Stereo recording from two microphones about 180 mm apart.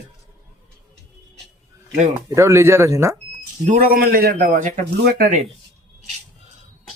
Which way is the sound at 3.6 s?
50° right (ahead or behind).